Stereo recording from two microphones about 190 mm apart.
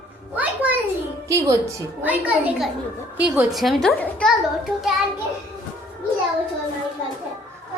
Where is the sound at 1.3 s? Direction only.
15° right (ahead or behind).